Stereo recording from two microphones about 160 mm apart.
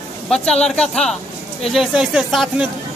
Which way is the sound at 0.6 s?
5° left (ahead or behind).